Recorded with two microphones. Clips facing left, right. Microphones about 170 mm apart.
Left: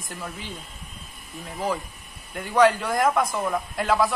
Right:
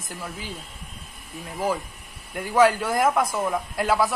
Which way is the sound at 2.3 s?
5° right (ahead or behind).